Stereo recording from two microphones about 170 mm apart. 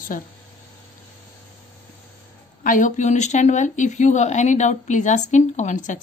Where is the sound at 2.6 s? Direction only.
50° left (ahead or behind).